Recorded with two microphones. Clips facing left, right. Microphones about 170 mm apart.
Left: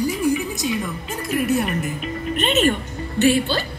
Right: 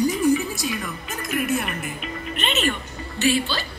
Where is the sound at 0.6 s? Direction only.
25° left (ahead or behind).